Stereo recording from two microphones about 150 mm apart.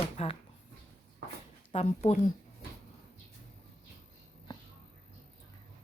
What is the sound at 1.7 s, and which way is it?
Speech, 45° left (ahead or behind).